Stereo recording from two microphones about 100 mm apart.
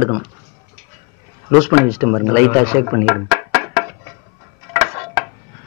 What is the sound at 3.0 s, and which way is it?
Music, 10° right (ahead or behind).